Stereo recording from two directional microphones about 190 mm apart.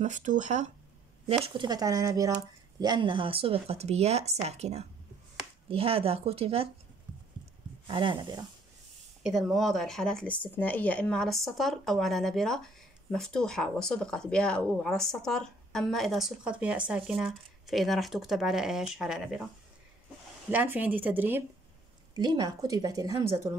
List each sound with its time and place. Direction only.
0.0 s speech: 40° right (ahead or behind)
1.4 s a woman's voice: 25° right (ahead or behind)
7.8 s a woman's voice: 25° right (ahead or behind)
9.2 s speech: centre (ahead or behind)
20.5 s a woman's voice: 10° right (ahead or behind)
22.1 s a woman's voice: 20° right (ahead or behind)